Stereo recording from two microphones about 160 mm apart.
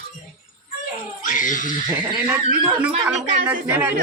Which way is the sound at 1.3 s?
55° left (ahead or behind).